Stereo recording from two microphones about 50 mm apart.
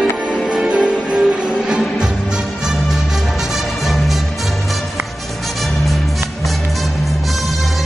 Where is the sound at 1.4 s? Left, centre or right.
Centre.